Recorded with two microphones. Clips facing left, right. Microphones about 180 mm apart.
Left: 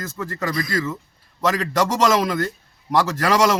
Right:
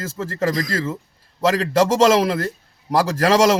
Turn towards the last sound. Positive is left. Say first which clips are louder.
# right 3 dB
turn(degrees=-35)  # may be behind; listen again after turning